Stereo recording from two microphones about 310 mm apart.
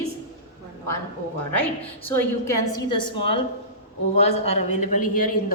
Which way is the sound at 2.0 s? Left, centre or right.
Centre.